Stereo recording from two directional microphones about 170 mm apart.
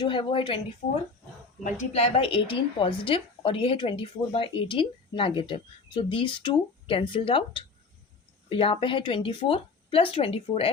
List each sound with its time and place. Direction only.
0.0 s a woman's voice: 30° left (ahead or behind)
1.9 s a woman's voice: 35° left (ahead or behind)